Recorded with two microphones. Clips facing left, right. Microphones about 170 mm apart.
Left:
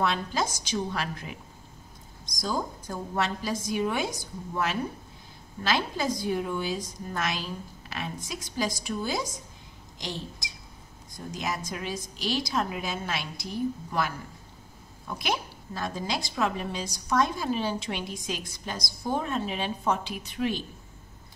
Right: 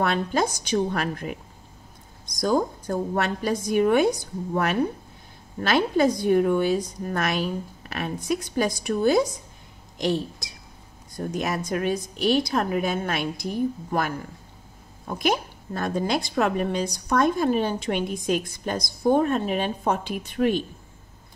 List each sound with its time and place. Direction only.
0.0 s a woman's voice: 55° right (ahead or behind)
2.4 s a woman's voice: 60° right (ahead or behind)
11.1 s a woman's voice: 60° right (ahead or behind)